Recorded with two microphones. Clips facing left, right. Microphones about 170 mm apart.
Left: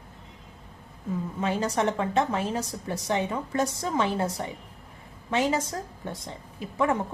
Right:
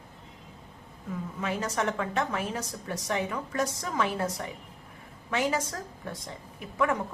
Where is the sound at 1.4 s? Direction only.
30° left (ahead or behind).